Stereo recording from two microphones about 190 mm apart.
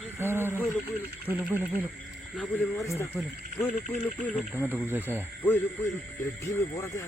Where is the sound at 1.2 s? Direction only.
10° right (ahead or behind).